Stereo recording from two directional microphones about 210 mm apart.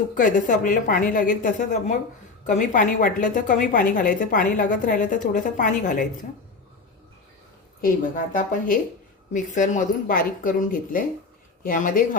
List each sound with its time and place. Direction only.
0.1 s a woman's voice: 40° left (ahead or behind)
7.8 s a woman's voice: 40° left (ahead or behind)